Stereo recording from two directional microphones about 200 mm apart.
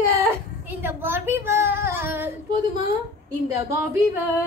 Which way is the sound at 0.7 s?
10° right (ahead or behind).